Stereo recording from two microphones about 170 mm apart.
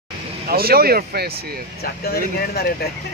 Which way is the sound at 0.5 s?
60° right (ahead or behind).